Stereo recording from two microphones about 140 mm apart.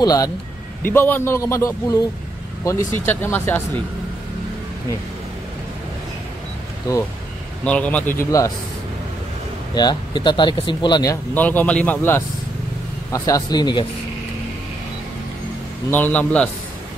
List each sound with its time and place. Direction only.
0.0 s a man's voice: 25° left (ahead or behind)
0.8 s a man's voice: 15° left (ahead or behind)
6.9 s a man's voice: 25° left (ahead or behind)
7.6 s speech: 10° left (ahead or behind)
9.8 s speech: 30° left (ahead or behind)
11.3 s a man's voice: 10° left (ahead or behind); by 13.8 s 30° left (ahead or behind)
15.9 s speech: 10° left (ahead or behind)